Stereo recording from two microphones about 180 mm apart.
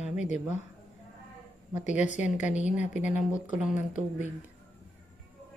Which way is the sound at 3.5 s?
5° right (ahead or behind).